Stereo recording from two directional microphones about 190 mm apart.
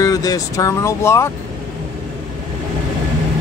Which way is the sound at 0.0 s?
20° left (ahead or behind).